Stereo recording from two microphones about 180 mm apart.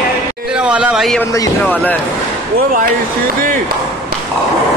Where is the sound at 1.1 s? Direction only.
10° left (ahead or behind).